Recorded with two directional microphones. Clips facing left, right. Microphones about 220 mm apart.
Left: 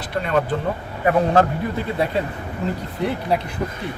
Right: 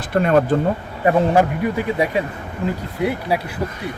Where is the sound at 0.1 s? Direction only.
45° right (ahead or behind).